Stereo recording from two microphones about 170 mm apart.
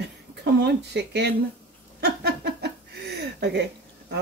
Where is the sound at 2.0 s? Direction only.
75° right (ahead or behind).